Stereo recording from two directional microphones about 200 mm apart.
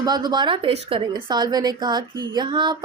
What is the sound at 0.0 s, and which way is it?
A woman's voice, 20° right (ahead or behind).